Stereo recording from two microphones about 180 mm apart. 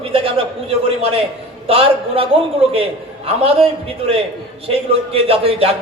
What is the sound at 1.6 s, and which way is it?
A man's voice, 30° right (ahead or behind).